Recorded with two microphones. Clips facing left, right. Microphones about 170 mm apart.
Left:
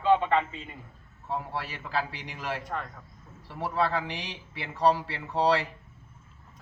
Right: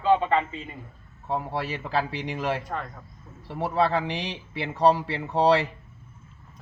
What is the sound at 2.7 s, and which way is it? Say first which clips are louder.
Speech: right 2 dB; centre (ahead or behind).